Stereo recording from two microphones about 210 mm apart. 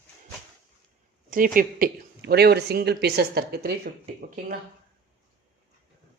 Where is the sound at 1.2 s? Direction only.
40° right (ahead or behind).